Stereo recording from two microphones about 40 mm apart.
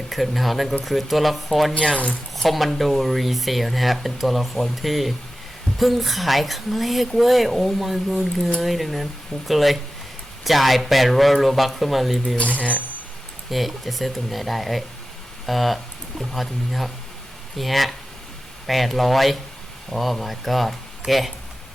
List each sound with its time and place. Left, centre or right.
0.1 s speech: centre
12.4 s speech: left
13.5 s speech: centre